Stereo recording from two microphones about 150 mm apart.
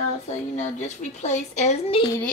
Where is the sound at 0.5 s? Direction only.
50° left (ahead or behind).